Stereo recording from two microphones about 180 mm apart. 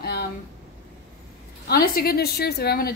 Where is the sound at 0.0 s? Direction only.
65° left (ahead or behind).